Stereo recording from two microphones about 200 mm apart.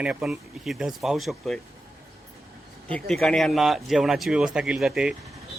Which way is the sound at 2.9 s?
5° left (ahead or behind).